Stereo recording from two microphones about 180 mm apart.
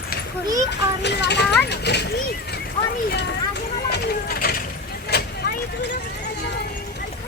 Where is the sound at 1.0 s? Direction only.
70° left (ahead or behind).